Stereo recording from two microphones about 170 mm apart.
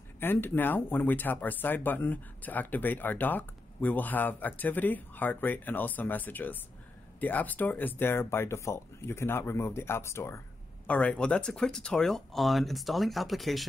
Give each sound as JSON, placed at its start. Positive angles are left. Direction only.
{"t": 0.2, "sound": "speech", "side_deg": 10}